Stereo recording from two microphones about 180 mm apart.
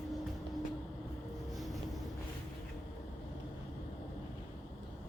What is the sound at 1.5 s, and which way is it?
Vehicle, centre (ahead or behind).